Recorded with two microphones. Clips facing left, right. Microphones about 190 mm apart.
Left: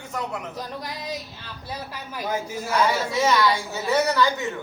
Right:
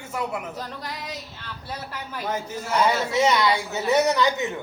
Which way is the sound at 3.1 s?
20° right (ahead or behind).